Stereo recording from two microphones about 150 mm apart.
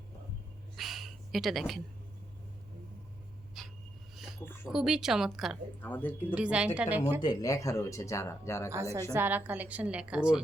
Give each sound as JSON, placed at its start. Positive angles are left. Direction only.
{"t": 0.8, "sound": "a sound", "side_deg": 0}
{"t": 3.6, "sound": "a sound", "side_deg": 0}
{"t": 4.1, "sound": "speech", "side_deg": 0}
{"t": 5.8, "sound": "speech", "side_deg": 15}
{"t": 6.1, "sound": "a woman's voice", "side_deg": -5}
{"t": 7.2, "sound": "speech", "side_deg": 25}
{"t": 9.1, "sound": "a woman's voice", "side_deg": -15}